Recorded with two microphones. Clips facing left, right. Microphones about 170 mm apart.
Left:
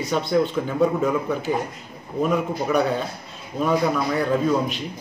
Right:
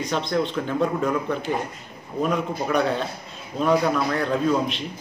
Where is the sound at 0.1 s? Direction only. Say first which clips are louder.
Left 4 dB; 5° left (ahead or behind).